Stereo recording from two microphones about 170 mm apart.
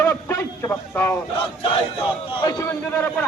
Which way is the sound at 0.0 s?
15° left (ahead or behind).